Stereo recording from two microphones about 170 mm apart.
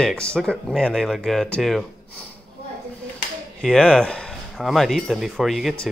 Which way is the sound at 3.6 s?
5° left (ahead or behind).